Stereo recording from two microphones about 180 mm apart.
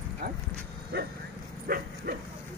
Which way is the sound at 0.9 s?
60° right (ahead or behind).